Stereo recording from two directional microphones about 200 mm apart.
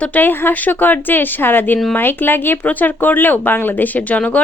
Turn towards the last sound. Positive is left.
turn(degrees=5)  # may be behind; listen again after turning